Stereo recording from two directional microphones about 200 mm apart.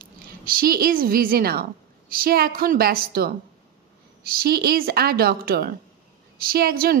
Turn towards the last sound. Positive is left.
turn(degrees=-50)  # may be behind; listen again after turning